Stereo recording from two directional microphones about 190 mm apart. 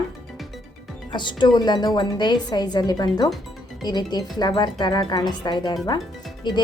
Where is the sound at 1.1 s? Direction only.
25° left (ahead or behind).